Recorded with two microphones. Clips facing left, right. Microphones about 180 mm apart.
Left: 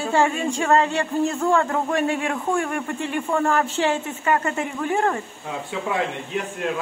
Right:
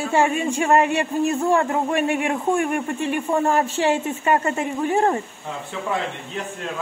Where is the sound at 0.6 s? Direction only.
20° right (ahead or behind).